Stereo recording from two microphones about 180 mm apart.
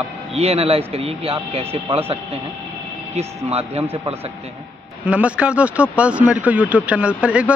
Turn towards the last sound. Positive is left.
turn(degrees=-5)  # may be behind; listen again after turning